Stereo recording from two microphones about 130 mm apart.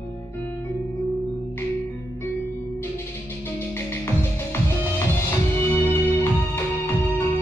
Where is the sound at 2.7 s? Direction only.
15° left (ahead or behind).